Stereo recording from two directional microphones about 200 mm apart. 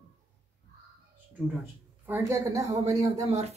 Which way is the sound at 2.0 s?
15° right (ahead or behind).